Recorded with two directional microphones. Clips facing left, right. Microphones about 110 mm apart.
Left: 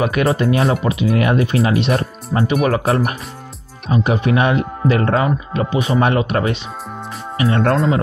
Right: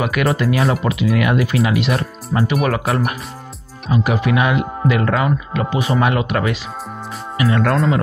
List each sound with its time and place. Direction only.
0.0 s speech: 30° left (ahead or behind)